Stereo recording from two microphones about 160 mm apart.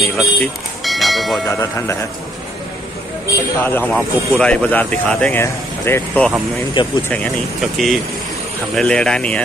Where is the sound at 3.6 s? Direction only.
10° left (ahead or behind).